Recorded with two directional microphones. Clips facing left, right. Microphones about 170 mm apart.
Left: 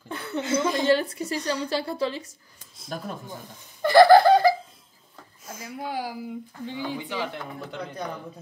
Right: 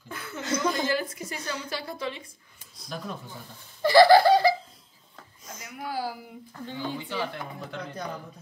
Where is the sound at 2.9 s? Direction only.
45° left (ahead or behind).